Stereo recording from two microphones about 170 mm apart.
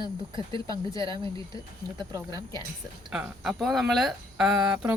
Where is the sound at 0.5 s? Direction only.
30° right (ahead or behind).